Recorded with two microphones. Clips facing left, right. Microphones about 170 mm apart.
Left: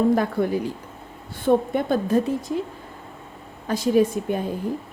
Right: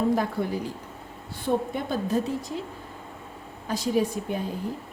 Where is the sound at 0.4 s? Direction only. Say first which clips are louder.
Left 6 dB; 50° left (ahead or behind).